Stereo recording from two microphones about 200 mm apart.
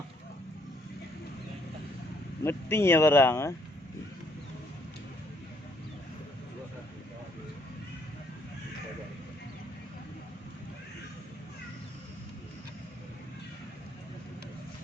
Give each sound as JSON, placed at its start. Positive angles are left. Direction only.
{"t": 2.4, "sound": "speech", "side_deg": 10}